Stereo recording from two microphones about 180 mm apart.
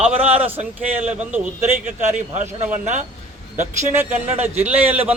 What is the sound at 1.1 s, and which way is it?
A man's voice, 10° right (ahead or behind).